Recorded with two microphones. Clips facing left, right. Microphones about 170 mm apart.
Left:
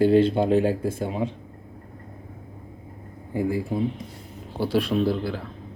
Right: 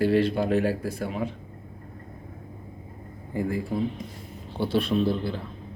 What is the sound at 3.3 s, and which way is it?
Speech, 15° left (ahead or behind).